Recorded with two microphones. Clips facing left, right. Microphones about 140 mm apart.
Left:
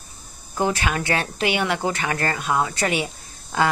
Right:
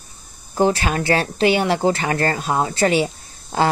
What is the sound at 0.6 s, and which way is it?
A woman's voice, 30° right (ahead or behind).